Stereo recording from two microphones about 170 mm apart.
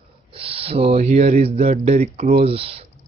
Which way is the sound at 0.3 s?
35° right (ahead or behind).